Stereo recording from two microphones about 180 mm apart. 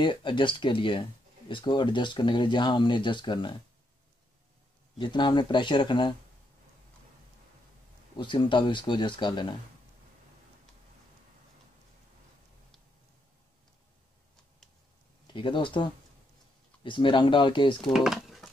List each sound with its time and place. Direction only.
0.0 s speech: 25° left (ahead or behind)
4.9 s speech: 25° left (ahead or behind)
8.2 s speech: 25° left (ahead or behind)
15.2 s speech: 25° left (ahead or behind)
17.9 s a sound: centre (ahead or behind)